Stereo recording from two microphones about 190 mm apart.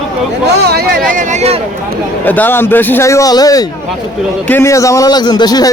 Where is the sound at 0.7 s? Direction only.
50° right (ahead or behind); by 1.6 s 35° right (ahead or behind).